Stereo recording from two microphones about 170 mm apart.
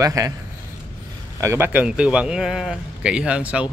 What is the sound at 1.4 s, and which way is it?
Speech, 15° right (ahead or behind).